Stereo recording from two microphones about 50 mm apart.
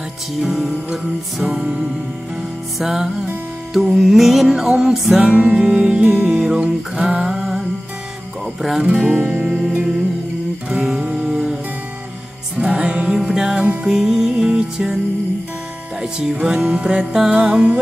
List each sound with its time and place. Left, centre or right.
0.4 s music: centre
5.2 s music: right
8.9 s music: right
9.2 s music: right
9.8 s music: centre
12.5 s music: centre
16.0 s music: centre
17.4 s music: right